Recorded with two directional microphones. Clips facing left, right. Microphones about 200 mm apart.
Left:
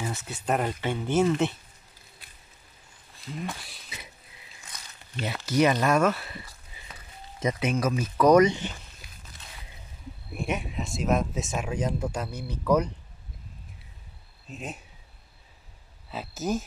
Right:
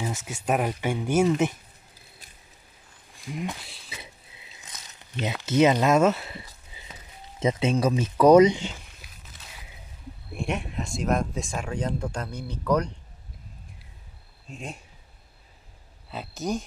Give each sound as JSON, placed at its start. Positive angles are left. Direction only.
{"t": 0.0, "sound": "speech", "side_deg": -10}
{"t": 3.3, "sound": "speech", "side_deg": -15}
{"t": 3.6, "sound": "a sound", "side_deg": -25}
{"t": 8.5, "sound": "a sound", "side_deg": -10}
{"t": 10.3, "sound": "speech", "side_deg": 0}
{"t": 14.5, "sound": "speech", "side_deg": 5}
{"t": 16.1, "sound": "speech", "side_deg": 0}